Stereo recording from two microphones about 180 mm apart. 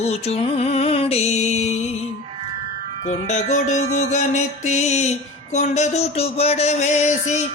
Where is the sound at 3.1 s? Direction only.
40° left (ahead or behind).